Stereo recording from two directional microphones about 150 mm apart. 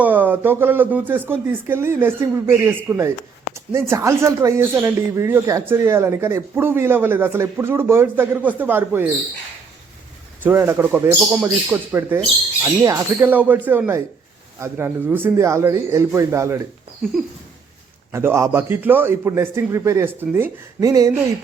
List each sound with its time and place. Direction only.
0.0 s speech: 10° right (ahead or behind)
10.4 s a man's voice: 15° right (ahead or behind)
18.1 s speech: 15° right (ahead or behind)